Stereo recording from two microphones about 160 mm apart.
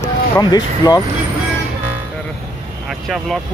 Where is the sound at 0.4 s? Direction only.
25° left (ahead or behind).